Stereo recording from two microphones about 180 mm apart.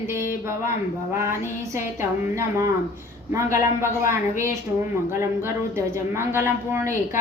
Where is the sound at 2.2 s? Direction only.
15° right (ahead or behind).